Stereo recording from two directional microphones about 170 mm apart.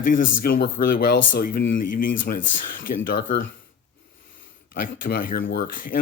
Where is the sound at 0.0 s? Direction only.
55° left (ahead or behind).